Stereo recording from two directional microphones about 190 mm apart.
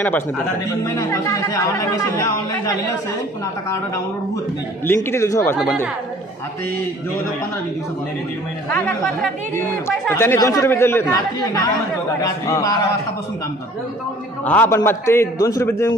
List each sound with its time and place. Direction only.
0.9 s speech: 15° left (ahead or behind)
4.9 s speech: 15° left (ahead or behind)
10.1 s speech: 15° left (ahead or behind)
14.4 s speech: 10° left (ahead or behind)